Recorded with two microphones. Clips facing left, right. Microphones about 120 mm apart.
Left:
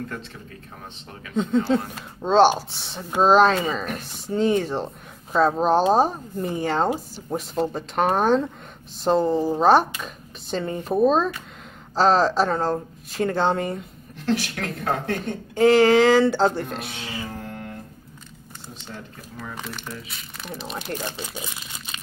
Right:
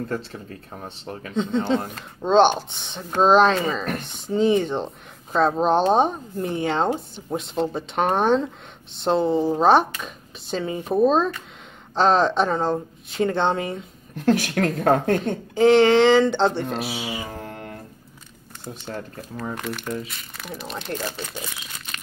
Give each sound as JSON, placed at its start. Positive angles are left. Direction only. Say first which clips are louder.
{"t": 0.8, "sound": "speech", "louder": "right 9 dB", "side_deg": -40}
{"t": 1.3, "sound": "speech", "louder": "left 1 dB", "side_deg": 5}
{"t": 14.1, "sound": "speech", "louder": "right 5 dB", "side_deg": -50}
{"t": 15.5, "sound": "speech", "louder": "right 1 dB", "side_deg": 0}
{"t": 18.9, "sound": "speech", "louder": "right 6 dB", "side_deg": -50}
{"t": 19.5, "sound": "speech", "louder": "right 6 dB", "side_deg": 0}